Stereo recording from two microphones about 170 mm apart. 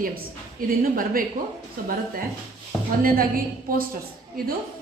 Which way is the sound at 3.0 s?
60° right (ahead or behind).